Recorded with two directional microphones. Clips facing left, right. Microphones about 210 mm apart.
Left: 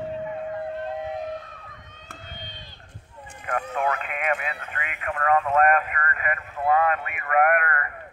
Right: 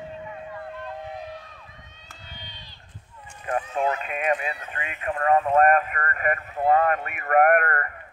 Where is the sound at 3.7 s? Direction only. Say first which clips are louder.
Right 1 dB; 30° right (ahead or behind); by 7.8 s 45° right (ahead or behind).